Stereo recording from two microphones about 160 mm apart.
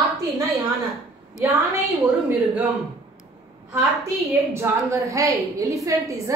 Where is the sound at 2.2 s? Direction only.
10° right (ahead or behind).